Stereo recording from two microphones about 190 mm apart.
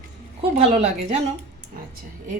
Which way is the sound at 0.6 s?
30° right (ahead or behind).